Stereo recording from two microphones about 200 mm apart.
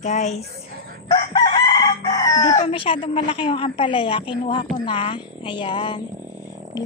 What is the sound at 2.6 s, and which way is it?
A woman's voice, 25° left (ahead or behind).